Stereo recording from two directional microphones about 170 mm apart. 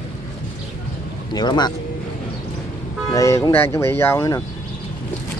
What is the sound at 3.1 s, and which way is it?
Speech, 20° left (ahead or behind).